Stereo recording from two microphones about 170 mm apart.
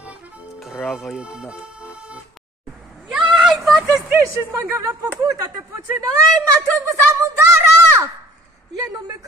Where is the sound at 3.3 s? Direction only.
Centre (ahead or behind).